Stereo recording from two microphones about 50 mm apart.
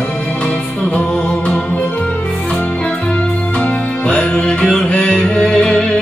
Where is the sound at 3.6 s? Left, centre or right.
Centre.